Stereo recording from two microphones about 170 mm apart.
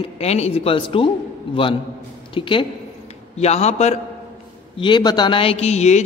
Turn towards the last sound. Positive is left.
turn(degrees=40)  # may be behind; listen again after turning